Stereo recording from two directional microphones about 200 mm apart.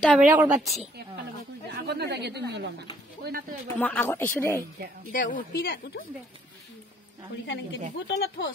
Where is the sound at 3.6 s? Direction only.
10° left (ahead or behind).